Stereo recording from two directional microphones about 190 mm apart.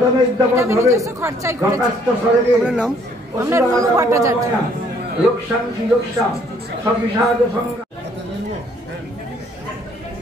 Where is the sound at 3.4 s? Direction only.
15° right (ahead or behind).